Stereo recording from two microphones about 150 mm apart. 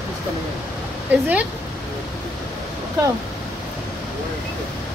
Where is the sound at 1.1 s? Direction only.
10° right (ahead or behind).